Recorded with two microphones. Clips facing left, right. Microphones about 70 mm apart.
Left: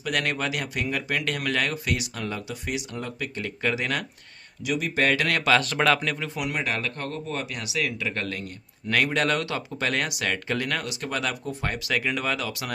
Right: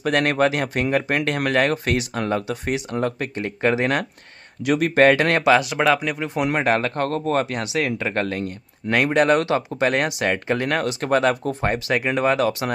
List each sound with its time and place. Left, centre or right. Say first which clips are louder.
0.0 s speech: right 8 dB; right
3.3 s speech: right 6 dB; right
4.6 s speech: right 9 dB; right
5.4 s speech: right 5 dB; centre
6.3 s speech: right 8 dB; right
8.9 s speech: right 7 dB; right